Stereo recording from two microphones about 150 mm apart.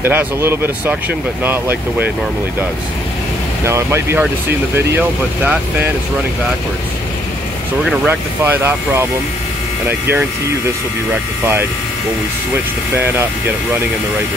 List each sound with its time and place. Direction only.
0.0 s speech: 15° right (ahead or behind)
3.6 s speech: 15° right (ahead or behind)
8.1 s speech: 15° right (ahead or behind)
12.9 s speech: 10° right (ahead or behind)